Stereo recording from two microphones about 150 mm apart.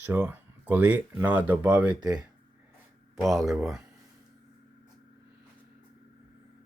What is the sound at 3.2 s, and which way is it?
Speech, centre (ahead or behind).